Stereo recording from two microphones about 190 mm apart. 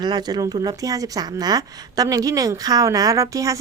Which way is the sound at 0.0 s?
20° right (ahead or behind).